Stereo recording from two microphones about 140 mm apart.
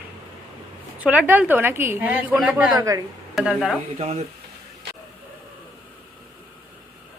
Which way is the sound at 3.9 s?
50° right (ahead or behind).